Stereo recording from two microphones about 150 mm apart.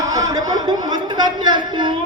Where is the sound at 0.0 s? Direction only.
25° right (ahead or behind).